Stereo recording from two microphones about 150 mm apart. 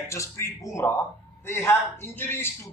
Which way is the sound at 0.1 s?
20° left (ahead or behind).